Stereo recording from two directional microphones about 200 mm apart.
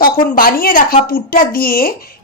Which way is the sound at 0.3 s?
45° left (ahead or behind).